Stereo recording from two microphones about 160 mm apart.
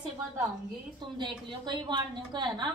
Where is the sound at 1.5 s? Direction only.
30° right (ahead or behind).